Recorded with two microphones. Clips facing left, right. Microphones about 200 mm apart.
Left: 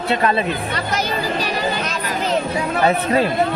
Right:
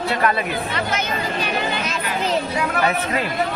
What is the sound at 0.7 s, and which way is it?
Music, 35° left (ahead or behind).